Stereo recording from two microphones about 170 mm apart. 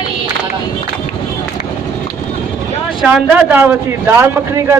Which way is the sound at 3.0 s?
5° right (ahead or behind).